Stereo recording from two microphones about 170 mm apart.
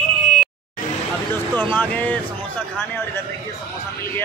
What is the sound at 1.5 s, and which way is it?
Speech, 10° left (ahead or behind).